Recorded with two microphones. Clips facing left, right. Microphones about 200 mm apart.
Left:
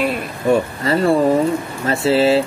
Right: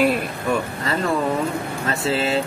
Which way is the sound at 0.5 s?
30° left (ahead or behind).